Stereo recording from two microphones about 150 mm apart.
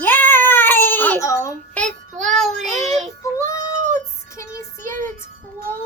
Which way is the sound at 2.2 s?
Centre (ahead or behind).